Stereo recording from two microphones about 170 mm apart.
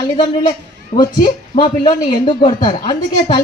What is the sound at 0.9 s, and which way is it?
Speech, 50° left (ahead or behind).